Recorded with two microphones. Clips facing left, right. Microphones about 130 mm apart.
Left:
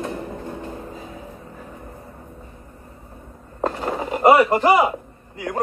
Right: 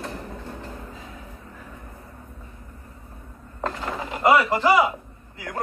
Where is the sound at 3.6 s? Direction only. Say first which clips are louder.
Left 5 dB; 30° left (ahead or behind).